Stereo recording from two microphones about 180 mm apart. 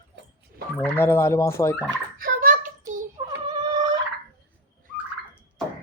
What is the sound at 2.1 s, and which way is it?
Child singing, 50° right (ahead or behind).